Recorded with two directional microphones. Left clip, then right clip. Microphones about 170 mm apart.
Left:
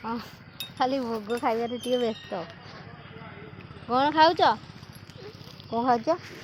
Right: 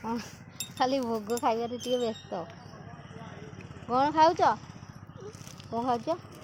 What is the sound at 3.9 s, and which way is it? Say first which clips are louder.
Speech: left 2 dB; 15° left (ahead or behind).